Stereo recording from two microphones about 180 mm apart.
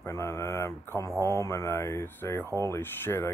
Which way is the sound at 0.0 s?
15° left (ahead or behind).